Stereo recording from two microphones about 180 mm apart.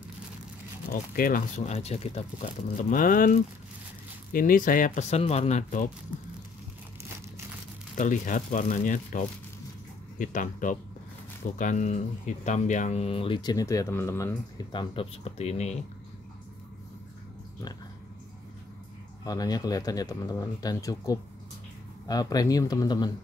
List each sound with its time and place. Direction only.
1.1 s speech: 50° left (ahead or behind)
8.0 s speech: 45° left (ahead or behind)
19.2 s speech: 20° left (ahead or behind)